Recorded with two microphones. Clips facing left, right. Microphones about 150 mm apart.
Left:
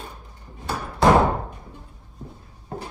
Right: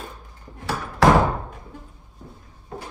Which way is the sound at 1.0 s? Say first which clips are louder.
Even; 90° right.